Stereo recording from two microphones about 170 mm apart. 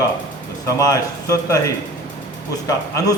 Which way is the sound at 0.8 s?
20° left (ahead or behind).